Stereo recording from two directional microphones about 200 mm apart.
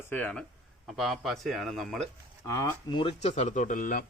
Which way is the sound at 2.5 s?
15° left (ahead or behind).